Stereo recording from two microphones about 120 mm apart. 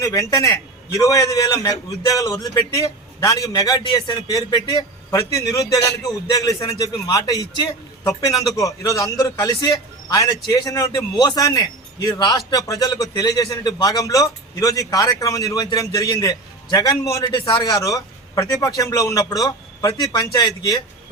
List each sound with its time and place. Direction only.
0.0 s a man's voice: 30° left (ahead or behind)
17.2 s a man's voice: 45° left (ahead or behind)
17.7 s a man's voice: 30° left (ahead or behind)